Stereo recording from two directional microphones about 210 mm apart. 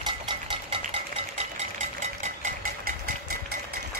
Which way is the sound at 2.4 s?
40° right (ahead or behind).